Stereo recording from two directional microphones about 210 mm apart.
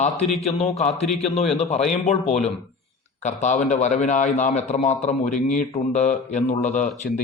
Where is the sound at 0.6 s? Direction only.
30° left (ahead or behind).